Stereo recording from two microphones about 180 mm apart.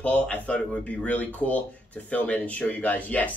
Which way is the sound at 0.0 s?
10° left (ahead or behind).